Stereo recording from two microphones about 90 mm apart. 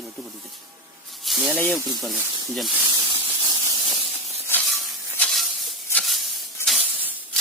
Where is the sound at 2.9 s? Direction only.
55° right (ahead or behind).